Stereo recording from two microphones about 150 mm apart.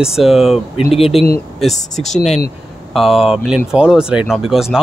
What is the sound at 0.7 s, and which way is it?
Speech, 40° left (ahead or behind).